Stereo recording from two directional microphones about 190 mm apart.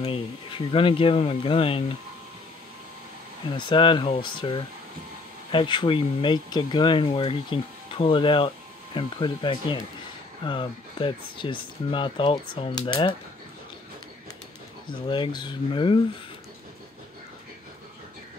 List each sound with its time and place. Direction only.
0.0 s speech: 30° left (ahead or behind)
3.4 s speech: 25° left (ahead or behind)
14.9 s speech: 25° left (ahead or behind)